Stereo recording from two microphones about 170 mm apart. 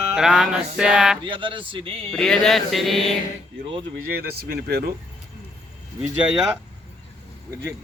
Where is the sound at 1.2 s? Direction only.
30° right (ahead or behind).